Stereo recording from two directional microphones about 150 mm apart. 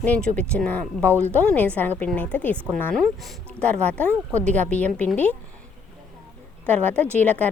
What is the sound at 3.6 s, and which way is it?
A woman's voice, 10° left (ahead or behind).